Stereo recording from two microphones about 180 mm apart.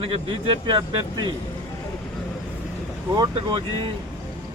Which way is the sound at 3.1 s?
25° right (ahead or behind).